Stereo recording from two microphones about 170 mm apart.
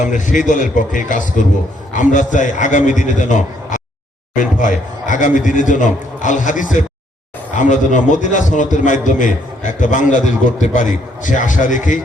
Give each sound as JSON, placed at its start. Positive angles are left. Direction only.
{"t": 0.0, "sound": "a man's voice", "side_deg": 50}